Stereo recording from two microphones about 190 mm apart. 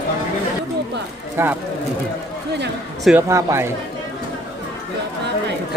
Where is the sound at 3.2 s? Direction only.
15° right (ahead or behind).